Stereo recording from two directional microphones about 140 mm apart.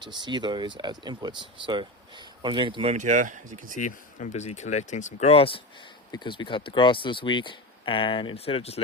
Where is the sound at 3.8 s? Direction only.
60° left (ahead or behind).